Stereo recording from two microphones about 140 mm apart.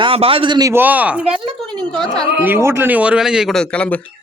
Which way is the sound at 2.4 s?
15° right (ahead or behind).